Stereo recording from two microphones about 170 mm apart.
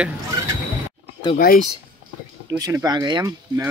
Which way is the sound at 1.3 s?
60° left (ahead or behind).